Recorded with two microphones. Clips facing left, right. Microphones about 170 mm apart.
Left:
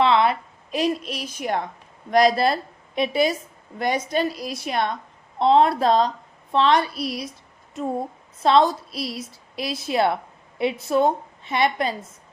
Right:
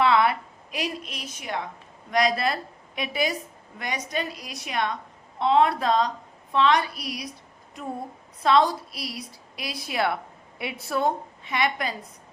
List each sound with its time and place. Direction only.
0.0 s a woman's voice: 25° left (ahead or behind)
8.4 s a woman's voice: 25° left (ahead or behind)